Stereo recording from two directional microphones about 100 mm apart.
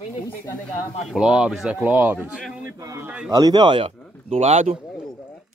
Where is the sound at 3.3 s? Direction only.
40° right (ahead or behind).